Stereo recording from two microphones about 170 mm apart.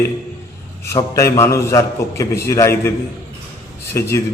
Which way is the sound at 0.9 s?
20° left (ahead or behind).